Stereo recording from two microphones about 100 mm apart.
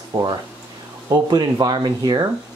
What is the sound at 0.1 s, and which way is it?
Speech, 50° right (ahead or behind).